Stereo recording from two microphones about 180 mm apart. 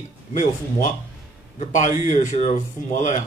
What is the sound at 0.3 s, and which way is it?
A man's voice, 50° left (ahead or behind).